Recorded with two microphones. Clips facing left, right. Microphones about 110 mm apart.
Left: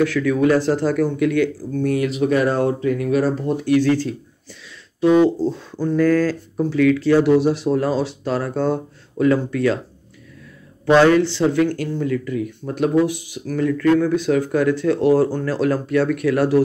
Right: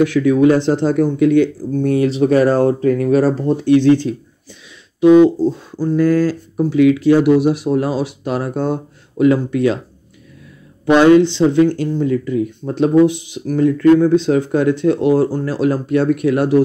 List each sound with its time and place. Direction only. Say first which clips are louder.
0.0 s speech: right 5 dB; 20° right (ahead or behind)
10.9 s speech: right 4 dB; 20° right (ahead or behind)